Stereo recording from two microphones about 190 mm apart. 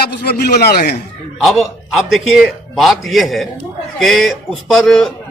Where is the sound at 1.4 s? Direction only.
Centre (ahead or behind).